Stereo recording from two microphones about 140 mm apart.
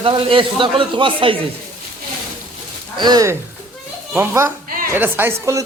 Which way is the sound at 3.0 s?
30° right (ahead or behind).